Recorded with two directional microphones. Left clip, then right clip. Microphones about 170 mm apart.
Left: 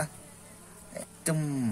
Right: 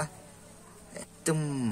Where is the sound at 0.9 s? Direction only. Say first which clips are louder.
Right 2 dB; 15° right (ahead or behind).